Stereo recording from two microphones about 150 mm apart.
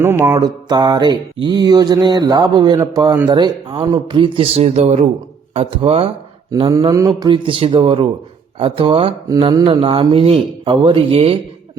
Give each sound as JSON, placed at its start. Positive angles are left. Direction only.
{"t": 0.0, "sound": "mantra", "side_deg": -15}
{"t": 0.3, "sound": "mantra", "side_deg": -30}
{"t": 3.2, "sound": "speech", "side_deg": -30}
{"t": 6.7, "sound": "mantra", "side_deg": -25}
{"t": 7.1, "sound": "speech", "side_deg": -35}